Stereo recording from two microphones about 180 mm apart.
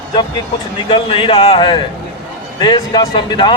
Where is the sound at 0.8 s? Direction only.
30° left (ahead or behind).